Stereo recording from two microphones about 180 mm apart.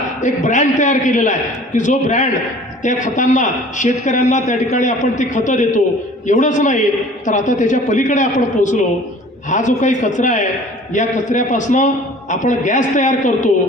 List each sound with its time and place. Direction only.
0.2 s a man's voice: 45° left (ahead or behind)